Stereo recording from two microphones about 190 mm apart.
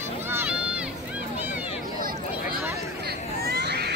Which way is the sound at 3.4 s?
60° right (ahead or behind).